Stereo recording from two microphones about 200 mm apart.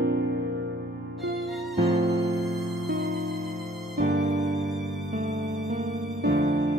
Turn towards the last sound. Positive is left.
turn(degrees=-50)  # may be behind; listen again after turning